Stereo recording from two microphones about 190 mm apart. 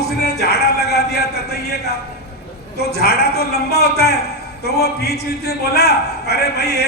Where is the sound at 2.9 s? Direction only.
55° left (ahead or behind).